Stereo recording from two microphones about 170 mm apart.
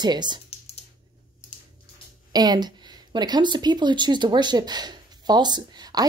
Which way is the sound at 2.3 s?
25° right (ahead or behind).